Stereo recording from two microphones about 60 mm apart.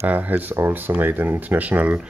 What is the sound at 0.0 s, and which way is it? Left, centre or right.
Speech, right.